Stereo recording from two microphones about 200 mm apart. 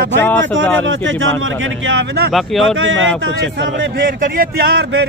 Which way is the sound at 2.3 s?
Centre (ahead or behind).